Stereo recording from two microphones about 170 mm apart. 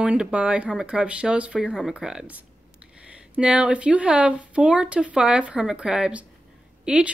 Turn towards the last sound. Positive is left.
turn(degrees=-5)  # may be behind; listen again after turning